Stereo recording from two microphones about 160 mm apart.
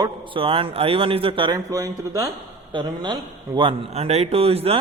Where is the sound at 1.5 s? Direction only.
20° right (ahead or behind).